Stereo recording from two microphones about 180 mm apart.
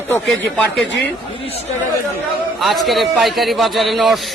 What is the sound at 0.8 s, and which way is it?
Speech, 80° left.